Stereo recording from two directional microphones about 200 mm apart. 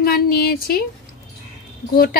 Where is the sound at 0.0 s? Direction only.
50° left (ahead or behind).